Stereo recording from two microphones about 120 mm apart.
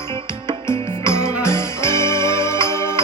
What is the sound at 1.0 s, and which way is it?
Music, 20° left (ahead or behind).